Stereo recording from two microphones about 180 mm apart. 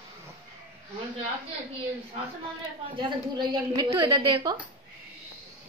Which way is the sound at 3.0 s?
25° right (ahead or behind).